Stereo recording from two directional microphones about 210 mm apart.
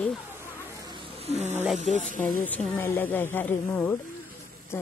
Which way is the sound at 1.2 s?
30° right (ahead or behind).